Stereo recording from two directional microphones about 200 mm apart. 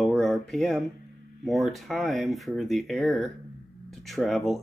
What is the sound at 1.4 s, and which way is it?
Speech, centre (ahead or behind).